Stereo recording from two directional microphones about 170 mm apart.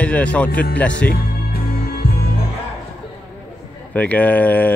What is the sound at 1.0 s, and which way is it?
Music, 60° left (ahead or behind).